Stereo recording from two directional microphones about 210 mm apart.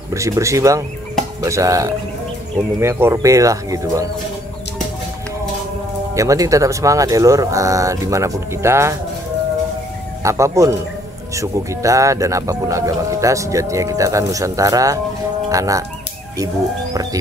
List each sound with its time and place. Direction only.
0.1 s speech: 15° right (ahead or behind)
6.1 s speech: 15° right (ahead or behind)
10.2 s speech: 15° right (ahead or behind)
16.9 s music: 15° right (ahead or behind)